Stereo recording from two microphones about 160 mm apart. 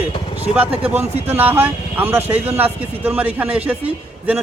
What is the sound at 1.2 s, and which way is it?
A man's voice, 15° right (ahead or behind).